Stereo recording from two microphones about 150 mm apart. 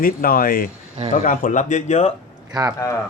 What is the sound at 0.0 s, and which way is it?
Speech, 70° left (ahead or behind).